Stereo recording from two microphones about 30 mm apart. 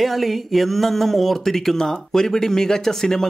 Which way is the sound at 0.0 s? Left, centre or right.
Centre.